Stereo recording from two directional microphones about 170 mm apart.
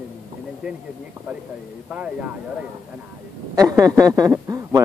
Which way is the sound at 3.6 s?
20° right (ahead or behind).